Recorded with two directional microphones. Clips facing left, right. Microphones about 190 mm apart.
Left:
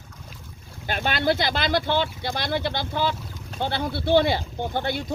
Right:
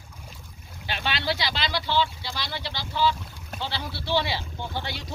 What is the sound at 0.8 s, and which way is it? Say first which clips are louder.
Speech: left 6 dB; 50° left (ahead or behind).